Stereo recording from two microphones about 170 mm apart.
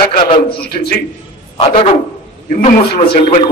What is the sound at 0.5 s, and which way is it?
Speech, 65° left (ahead or behind).